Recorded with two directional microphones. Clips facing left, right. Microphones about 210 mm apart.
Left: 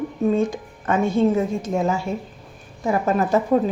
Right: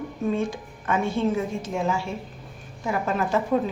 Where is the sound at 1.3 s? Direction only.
40° left (ahead or behind).